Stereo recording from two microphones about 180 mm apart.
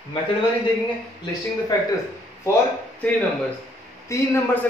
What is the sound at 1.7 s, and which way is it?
Speech, 20° left (ahead or behind).